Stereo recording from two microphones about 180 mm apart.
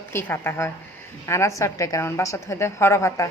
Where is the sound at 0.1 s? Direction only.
10° left (ahead or behind).